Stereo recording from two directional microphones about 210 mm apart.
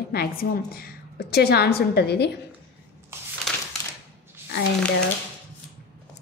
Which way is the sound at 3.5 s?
Centre (ahead or behind).